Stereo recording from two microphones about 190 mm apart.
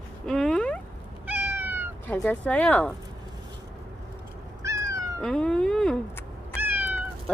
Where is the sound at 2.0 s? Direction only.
10° left (ahead or behind).